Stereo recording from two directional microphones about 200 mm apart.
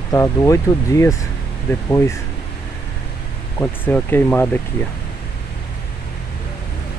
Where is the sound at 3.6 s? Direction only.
10° left (ahead or behind).